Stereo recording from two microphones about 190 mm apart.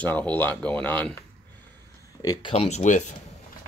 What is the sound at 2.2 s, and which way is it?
Speech, 20° left (ahead or behind).